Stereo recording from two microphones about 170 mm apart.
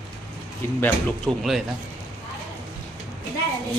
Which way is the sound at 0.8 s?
10° left (ahead or behind).